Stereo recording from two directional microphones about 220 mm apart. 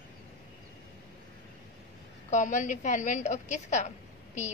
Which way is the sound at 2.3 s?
35° left (ahead or behind).